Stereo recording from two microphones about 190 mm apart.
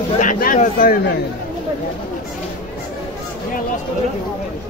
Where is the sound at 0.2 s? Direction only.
45° left (ahead or behind).